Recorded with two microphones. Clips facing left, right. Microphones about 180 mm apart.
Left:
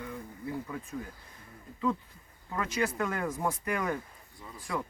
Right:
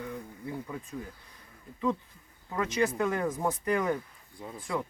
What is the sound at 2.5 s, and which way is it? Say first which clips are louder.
Speech: right 3 dB; 20° right (ahead or behind).